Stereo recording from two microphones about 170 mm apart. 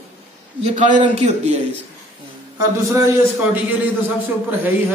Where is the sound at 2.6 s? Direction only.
20° right (ahead or behind).